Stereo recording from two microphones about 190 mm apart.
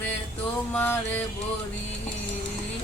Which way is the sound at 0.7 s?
10° left (ahead or behind).